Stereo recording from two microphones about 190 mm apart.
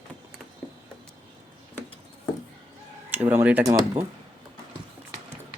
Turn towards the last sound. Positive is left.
turn(degrees=-15)  # may be behind; listen again after turning